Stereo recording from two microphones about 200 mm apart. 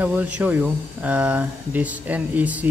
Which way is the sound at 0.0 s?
10° right (ahead or behind).